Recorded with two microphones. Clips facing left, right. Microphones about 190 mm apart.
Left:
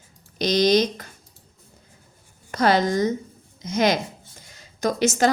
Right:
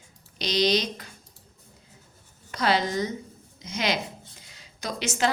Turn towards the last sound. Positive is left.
turn(degrees=45)  # may be behind; listen again after turning